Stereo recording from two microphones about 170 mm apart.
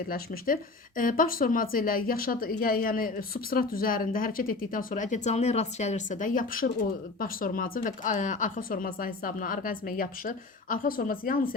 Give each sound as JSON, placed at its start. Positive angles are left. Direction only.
{"t": 0.1, "sound": "speech", "side_deg": 55}